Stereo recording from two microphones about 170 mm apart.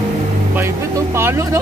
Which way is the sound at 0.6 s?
15° right (ahead or behind).